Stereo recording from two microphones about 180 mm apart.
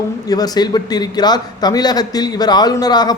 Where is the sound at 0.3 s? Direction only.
20° left (ahead or behind).